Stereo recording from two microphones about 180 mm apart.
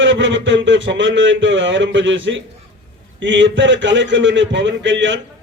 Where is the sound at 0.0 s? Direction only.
90° right.